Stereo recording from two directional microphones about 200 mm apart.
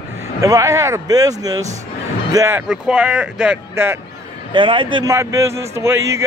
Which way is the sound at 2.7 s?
5° right (ahead or behind).